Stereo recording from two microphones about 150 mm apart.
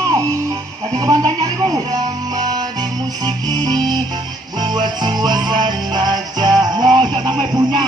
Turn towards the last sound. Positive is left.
turn(degrees=-30)  # may be behind; listen again after turning